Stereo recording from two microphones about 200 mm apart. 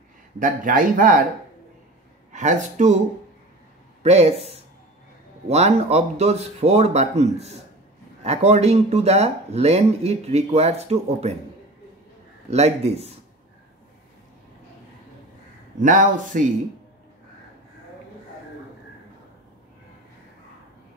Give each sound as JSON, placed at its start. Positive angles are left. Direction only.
{"t": 0.4, "sound": "speech", "side_deg": -40}
{"t": 2.3, "sound": "speech", "side_deg": -35}
{"t": 4.0, "sound": "speech", "side_deg": -30}
{"t": 12.4, "sound": "speech", "side_deg": -30}
{"t": 15.8, "sound": "speech", "side_deg": -40}